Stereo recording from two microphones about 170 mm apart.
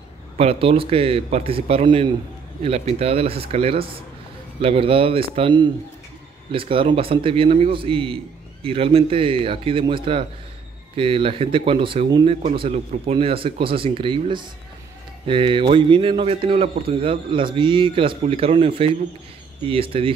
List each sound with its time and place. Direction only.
0.4 s a man's voice: 35° right (ahead or behind)